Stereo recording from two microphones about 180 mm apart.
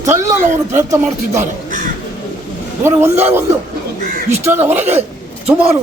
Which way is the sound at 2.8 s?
15° right (ahead or behind).